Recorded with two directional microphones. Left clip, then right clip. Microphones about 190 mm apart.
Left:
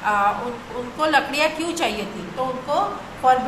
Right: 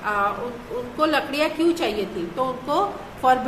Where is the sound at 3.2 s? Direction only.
25° right (ahead or behind).